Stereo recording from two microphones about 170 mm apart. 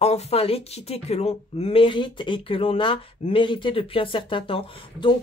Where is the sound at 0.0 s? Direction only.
35° left (ahead or behind).